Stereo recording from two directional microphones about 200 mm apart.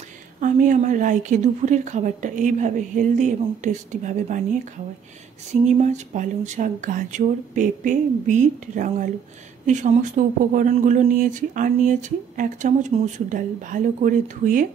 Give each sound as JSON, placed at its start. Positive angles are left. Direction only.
{"t": 0.4, "sound": "speech", "side_deg": -40}
{"t": 5.5, "sound": "speech", "side_deg": -35}